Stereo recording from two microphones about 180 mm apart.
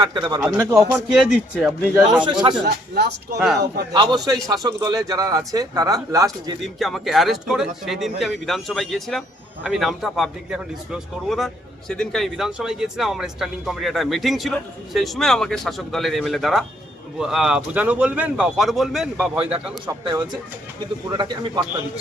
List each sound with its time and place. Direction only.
0.0 s speech: 25° right (ahead or behind)
0.4 s a man's voice: 10° right (ahead or behind)
2.2 s speech: 25° right (ahead or behind)
2.6 s speech: 60° right (ahead or behind)
3.3 s a man's voice: centre (ahead or behind)
3.9 s speech: 25° right (ahead or behind)
6.6 s a man's voice: centre (ahead or behind)
21.1 s speech: 25° right (ahead or behind)